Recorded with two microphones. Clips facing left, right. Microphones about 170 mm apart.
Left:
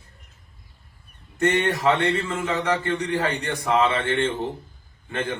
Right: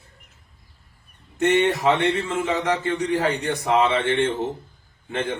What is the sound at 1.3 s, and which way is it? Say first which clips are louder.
A man's voice: right 3 dB; 15° right (ahead or behind).